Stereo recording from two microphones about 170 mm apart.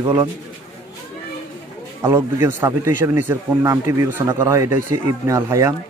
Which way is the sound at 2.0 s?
15° right (ahead or behind).